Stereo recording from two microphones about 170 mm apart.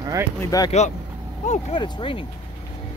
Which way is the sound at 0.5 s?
20° left (ahead or behind).